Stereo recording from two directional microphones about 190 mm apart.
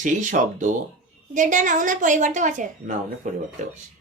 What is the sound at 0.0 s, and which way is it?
A child's voice, 40° right (ahead or behind).